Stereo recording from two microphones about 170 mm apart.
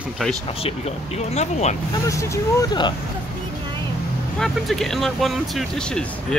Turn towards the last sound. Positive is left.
turn(degrees=5)  # may be behind; listen again after turning